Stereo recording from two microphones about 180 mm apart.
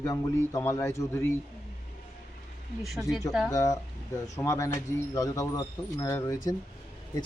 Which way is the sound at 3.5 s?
20° left (ahead or behind).